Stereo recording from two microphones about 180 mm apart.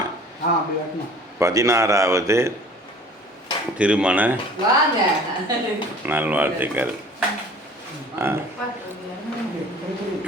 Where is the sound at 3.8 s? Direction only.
5° right (ahead or behind).